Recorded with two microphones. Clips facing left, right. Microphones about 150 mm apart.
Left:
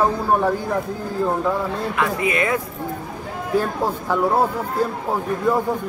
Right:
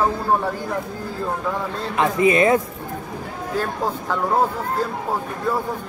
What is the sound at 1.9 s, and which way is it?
Speech, 25° right (ahead or behind).